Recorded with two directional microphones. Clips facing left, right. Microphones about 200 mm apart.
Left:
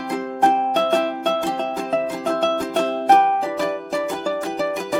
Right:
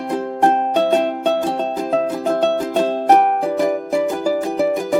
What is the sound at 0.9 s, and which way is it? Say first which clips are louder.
Music: right 3 dB; 20° right (ahead or behind).